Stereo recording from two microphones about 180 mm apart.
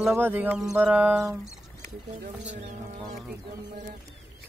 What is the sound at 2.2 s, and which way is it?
Speech, 40° right (ahead or behind).